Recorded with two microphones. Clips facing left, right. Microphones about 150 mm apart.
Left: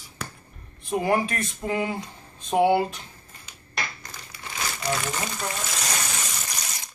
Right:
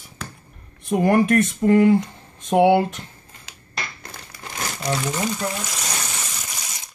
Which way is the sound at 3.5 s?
90° right.